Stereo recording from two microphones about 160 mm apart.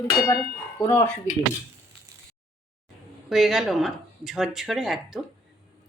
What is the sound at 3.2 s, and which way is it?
Speech, centre (ahead or behind).